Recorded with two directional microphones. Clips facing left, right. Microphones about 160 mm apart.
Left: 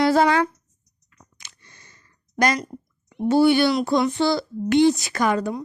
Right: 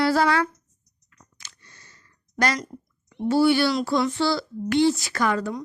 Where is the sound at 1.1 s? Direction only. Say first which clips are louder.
Left 1 dB; 15° left (ahead or behind).